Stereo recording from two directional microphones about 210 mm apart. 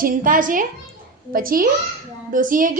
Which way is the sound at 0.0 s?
40° right (ahead or behind).